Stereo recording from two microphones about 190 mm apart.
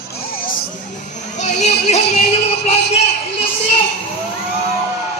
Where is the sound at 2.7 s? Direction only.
35° left (ahead or behind).